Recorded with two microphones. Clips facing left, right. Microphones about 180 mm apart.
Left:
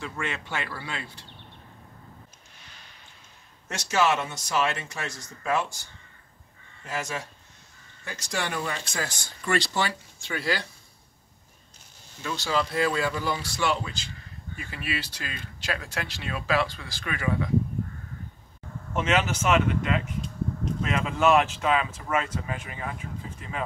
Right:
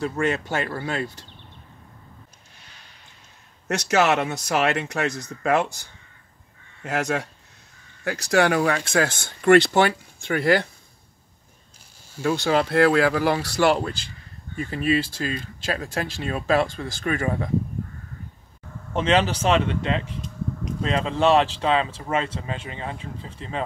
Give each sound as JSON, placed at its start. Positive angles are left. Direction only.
{"t": 0.0, "sound": "speech", "side_deg": -40}
{"t": 3.6, "sound": "speech", "side_deg": -70}
{"t": 6.8, "sound": "speech", "side_deg": -65}
{"t": 12.2, "sound": "speech", "side_deg": -55}
{"t": 14.6, "sound": "speech", "side_deg": -40}
{"t": 18.9, "sound": "speech", "side_deg": -30}